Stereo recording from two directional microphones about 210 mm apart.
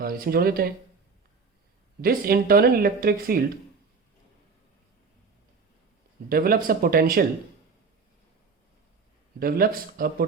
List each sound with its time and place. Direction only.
0.0 s speech: 45° right (ahead or behind)
2.0 s speech: 45° right (ahead or behind)
6.2 s speech: 45° right (ahead or behind)
9.4 s speech: 45° right (ahead or behind)